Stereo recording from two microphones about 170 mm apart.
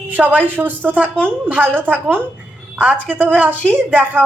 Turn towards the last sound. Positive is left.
turn(degrees=-10)  # may be behind; listen again after turning